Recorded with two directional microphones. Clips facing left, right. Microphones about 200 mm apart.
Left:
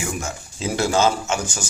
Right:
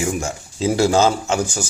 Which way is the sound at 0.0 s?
30° right (ahead or behind).